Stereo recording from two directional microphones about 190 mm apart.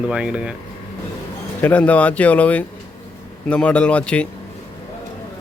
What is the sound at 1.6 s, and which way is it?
Speech, 10° left (ahead or behind).